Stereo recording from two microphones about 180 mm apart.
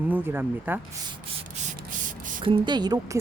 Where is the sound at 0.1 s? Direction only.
10° right (ahead or behind).